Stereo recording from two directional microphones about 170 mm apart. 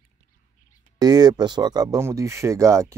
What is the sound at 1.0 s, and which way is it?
Speech, 25° right (ahead or behind).